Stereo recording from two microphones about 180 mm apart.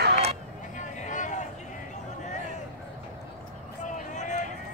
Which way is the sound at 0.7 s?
45° left (ahead or behind).